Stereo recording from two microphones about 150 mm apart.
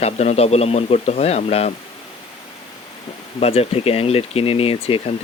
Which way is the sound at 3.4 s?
40° left (ahead or behind).